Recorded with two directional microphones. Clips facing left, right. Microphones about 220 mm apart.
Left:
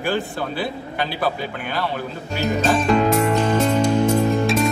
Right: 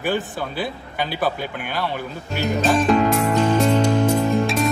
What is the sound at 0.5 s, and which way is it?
Speech, 50° right (ahead or behind).